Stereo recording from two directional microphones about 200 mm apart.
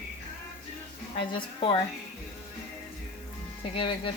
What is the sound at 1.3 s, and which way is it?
Speech, 25° left (ahead or behind).